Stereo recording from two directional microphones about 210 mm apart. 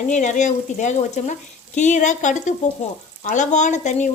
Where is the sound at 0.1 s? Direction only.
35° left (ahead or behind).